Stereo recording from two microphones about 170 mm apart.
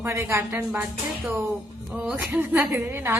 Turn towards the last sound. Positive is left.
turn(degrees=-15)  # may be behind; listen again after turning